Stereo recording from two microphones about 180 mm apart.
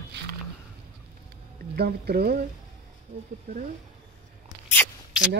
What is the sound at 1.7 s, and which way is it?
Speech, 60° right (ahead or behind).